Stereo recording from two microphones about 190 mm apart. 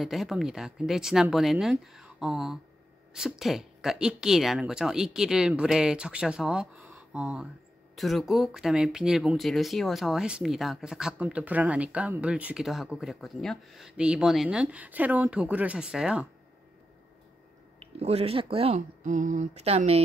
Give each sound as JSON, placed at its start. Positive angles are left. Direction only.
{"t": 0.0, "sound": "speech", "side_deg": 0}
{"t": 17.7, "sound": "speech", "side_deg": -30}
{"t": 19.0, "sound": "speech", "side_deg": -40}